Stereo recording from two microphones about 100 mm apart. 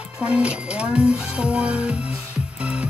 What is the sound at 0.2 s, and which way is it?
A child's voice, 10° right (ahead or behind).